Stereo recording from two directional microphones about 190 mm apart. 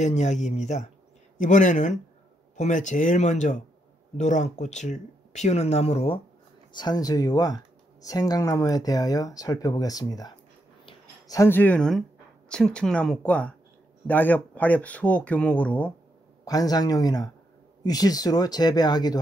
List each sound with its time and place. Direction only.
0.0 s speech: 40° left (ahead or behind); by 10.3 s 20° left (ahead or behind)
10.9 s a sound: 20° left (ahead or behind)
12.4 s speech: 5° left (ahead or behind)
16.4 s speech: 20° left (ahead or behind)